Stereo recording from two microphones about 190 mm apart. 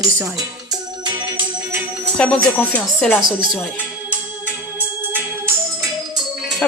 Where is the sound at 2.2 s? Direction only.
5° left (ahead or behind).